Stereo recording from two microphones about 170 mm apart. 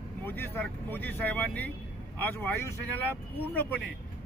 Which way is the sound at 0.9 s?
10° left (ahead or behind).